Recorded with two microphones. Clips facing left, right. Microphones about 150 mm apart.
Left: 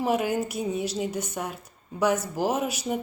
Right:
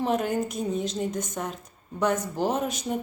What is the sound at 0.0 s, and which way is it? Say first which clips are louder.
A woman's voice: even; 5° left (ahead or behind).